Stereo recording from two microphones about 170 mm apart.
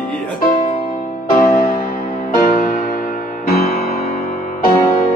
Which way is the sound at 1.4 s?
55° left (ahead or behind).